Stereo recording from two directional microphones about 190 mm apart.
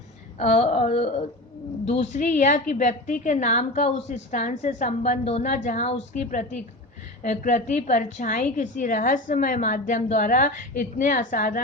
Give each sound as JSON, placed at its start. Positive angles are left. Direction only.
{"t": 0.3, "sound": "a woman's voice", "side_deg": 35}